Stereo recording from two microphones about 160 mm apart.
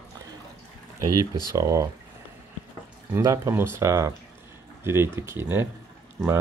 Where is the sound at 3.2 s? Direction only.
20° right (ahead or behind).